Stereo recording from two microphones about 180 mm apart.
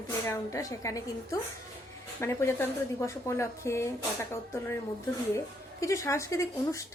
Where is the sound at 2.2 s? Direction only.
15° left (ahead or behind).